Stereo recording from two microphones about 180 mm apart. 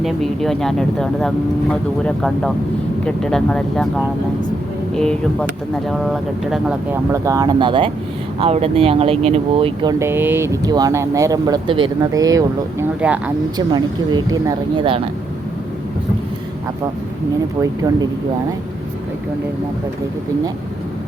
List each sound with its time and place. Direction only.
0.0 s speech: centre (ahead or behind)
5.9 s speech: centre (ahead or behind)
6.9 s speech: 15° right (ahead or behind)
10.0 s speech: 10° right (ahead or behind)
13.0 s speech: 5° right (ahead or behind)
13.7 s speech: 25° right (ahead or behind)